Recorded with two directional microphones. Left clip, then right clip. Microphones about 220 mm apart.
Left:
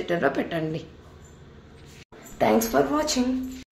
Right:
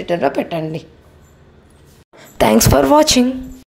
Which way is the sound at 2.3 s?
45° right (ahead or behind).